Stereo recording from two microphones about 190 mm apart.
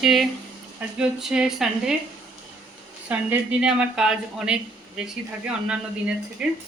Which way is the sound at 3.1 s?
5° right (ahead or behind).